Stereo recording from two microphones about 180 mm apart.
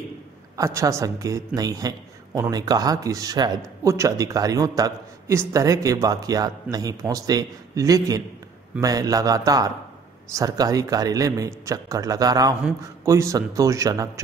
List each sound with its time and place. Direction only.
0.6 s a man's voice: 15° right (ahead or behind)